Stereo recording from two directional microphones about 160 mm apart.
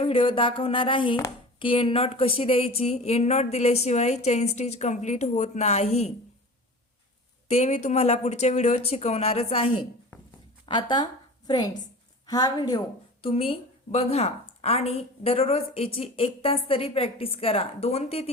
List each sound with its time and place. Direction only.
0.0 s a woman's voice: 35° left (ahead or behind)
7.5 s a woman's voice: 45° left (ahead or behind); by 12.8 s 25° left (ahead or behind)
13.2 s a woman's voice: 35° left (ahead or behind)